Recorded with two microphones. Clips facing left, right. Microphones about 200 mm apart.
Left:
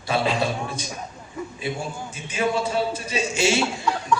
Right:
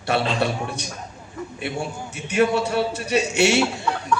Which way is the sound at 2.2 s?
65° right (ahead or behind).